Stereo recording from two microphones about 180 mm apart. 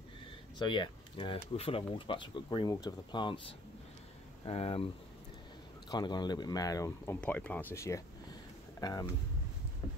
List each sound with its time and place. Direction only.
0.6 s speech: 25° left (ahead or behind)
5.9 s speech: 25° left (ahead or behind)
7.2 s speech: 10° left (ahead or behind)
8.7 s a sound: 20° left (ahead or behind)